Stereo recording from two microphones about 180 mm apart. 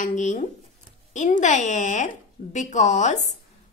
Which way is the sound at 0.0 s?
45° left (ahead or behind).